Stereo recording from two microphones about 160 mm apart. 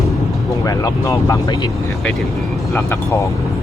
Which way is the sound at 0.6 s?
20° left (ahead or behind).